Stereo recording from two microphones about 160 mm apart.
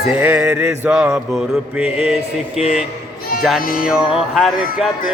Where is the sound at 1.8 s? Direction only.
5° right (ahead or behind).